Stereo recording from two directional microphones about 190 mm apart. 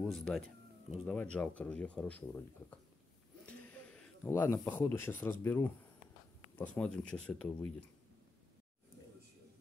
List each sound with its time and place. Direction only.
0.0 s speech: centre (ahead or behind)